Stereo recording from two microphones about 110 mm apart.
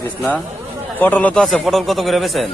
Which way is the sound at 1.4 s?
Centre (ahead or behind).